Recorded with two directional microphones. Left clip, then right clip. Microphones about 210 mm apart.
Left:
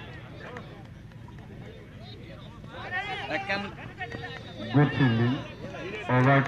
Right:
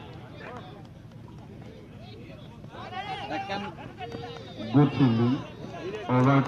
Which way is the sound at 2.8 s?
55° right (ahead or behind).